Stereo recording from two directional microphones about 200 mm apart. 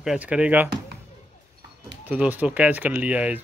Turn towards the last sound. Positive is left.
turn(degrees=-5)  # may be behind; listen again after turning